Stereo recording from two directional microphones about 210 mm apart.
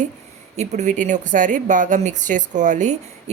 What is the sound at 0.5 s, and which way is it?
Speech, 35° right (ahead or behind).